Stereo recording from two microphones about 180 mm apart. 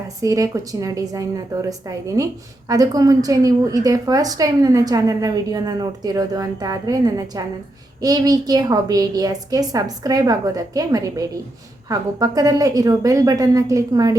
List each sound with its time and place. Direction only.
0.2 s a woman's voice: 20° right (ahead or behind)